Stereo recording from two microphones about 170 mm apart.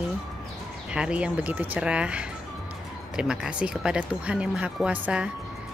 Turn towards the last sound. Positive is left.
turn(degrees=-5)  # may be behind; listen again after turning